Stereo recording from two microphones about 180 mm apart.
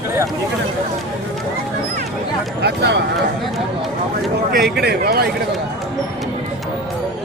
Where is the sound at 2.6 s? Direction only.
70° right (ahead or behind).